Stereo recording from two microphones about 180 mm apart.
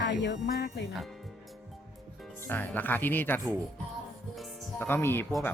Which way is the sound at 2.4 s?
10° left (ahead or behind).